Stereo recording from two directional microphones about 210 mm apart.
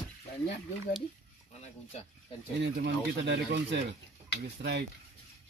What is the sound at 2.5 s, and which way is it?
Speech, 55° right (ahead or behind).